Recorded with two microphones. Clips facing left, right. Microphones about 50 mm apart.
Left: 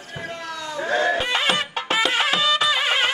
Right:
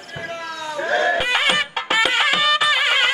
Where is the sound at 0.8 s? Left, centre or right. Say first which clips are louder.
Right 2 dB; centre.